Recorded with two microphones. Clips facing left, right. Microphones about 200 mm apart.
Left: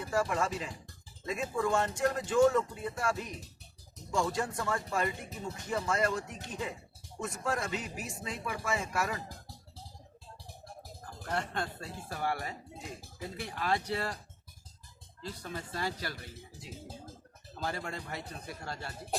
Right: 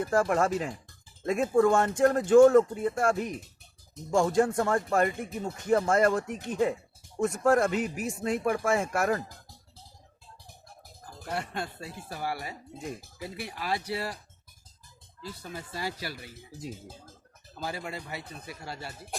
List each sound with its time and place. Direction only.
0.0 s speech: 50° right (ahead or behind)
11.3 s speech: 10° right (ahead or behind)
15.2 s speech: 5° right (ahead or behind)
17.6 s speech: 5° right (ahead or behind)